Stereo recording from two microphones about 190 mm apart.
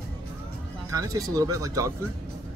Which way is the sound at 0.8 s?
20° right (ahead or behind).